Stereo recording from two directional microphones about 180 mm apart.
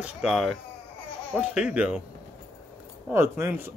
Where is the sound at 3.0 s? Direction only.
15° right (ahead or behind).